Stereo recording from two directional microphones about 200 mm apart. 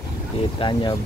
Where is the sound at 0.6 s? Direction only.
20° left (ahead or behind).